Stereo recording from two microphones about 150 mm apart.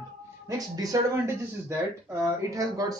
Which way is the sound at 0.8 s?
20° right (ahead or behind).